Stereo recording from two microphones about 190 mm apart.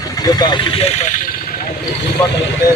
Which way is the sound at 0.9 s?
40° left (ahead or behind).